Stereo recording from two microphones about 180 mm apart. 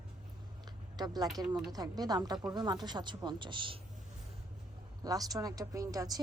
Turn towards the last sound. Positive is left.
turn(degrees=-20)  # may be behind; listen again after turning